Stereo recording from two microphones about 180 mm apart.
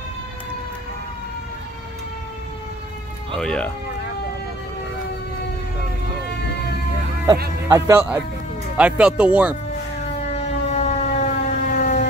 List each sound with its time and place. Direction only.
3.3 s speech: 5° left (ahead or behind)
7.6 s speech: 15° right (ahead or behind)
10.3 s siren: 40° left (ahead or behind)